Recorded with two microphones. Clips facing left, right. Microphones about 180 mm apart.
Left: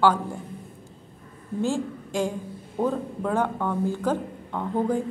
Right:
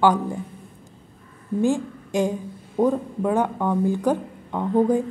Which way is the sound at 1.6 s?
15° right (ahead or behind).